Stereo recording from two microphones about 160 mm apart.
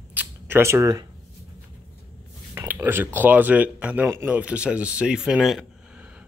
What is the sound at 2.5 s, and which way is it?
Speech, 10° right (ahead or behind).